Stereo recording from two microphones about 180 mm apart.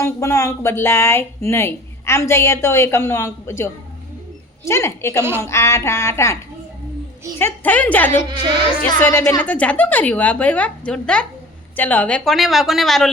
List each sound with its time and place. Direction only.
0.0 s speech: 15° left (ahead or behind)
7.3 s a woman's voice: 10° left (ahead or behind)